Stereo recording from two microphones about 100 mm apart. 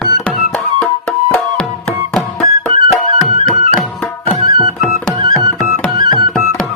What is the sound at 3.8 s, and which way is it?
Tabla, 5° left (ahead or behind).